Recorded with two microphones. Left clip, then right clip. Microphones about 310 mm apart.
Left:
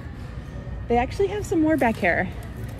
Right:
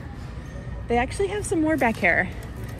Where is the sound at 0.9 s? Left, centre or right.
Right.